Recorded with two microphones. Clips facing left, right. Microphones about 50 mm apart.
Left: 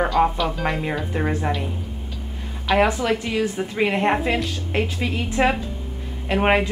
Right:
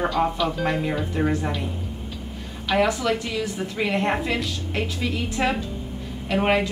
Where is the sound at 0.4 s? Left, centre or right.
Centre.